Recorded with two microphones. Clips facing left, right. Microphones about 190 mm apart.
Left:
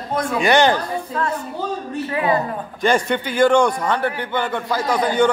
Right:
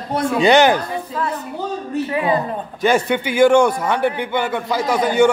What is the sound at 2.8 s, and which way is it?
A man's voice, 5° right (ahead or behind).